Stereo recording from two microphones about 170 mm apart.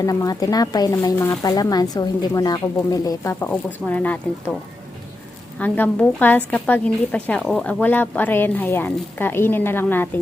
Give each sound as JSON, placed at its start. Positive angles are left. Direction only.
{"t": 0.0, "sound": "speech", "side_deg": 20}
{"t": 3.5, "sound": "a woman's voice", "side_deg": 10}
{"t": 5.5, "sound": "a woman's voice", "side_deg": 10}